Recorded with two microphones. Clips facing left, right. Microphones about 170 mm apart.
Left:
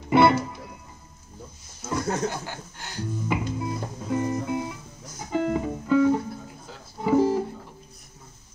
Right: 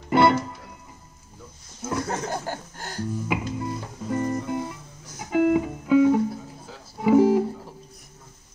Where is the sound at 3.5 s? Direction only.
5° left (ahead or behind).